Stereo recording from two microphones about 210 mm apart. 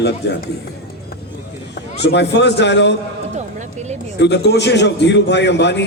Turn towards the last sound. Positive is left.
turn(degrees=55)  # may be behind; listen again after turning